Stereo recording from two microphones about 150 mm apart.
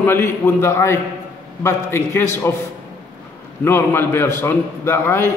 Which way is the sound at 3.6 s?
15° left (ahead or behind).